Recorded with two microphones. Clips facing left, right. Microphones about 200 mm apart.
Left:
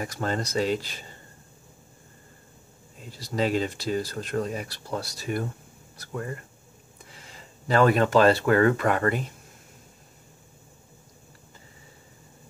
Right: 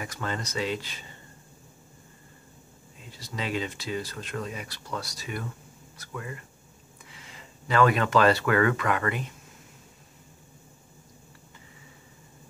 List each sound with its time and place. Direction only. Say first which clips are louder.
0.0 s speech: left 5 dB; 40° left (ahead or behind)
3.2 s speech: left 6 dB; 40° left (ahead or behind)